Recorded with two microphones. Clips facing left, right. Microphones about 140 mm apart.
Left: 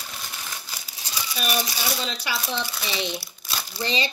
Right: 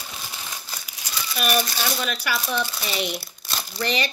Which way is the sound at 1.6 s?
10° left (ahead or behind).